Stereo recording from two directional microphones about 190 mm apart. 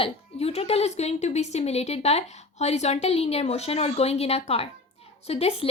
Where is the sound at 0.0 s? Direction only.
30° left (ahead or behind).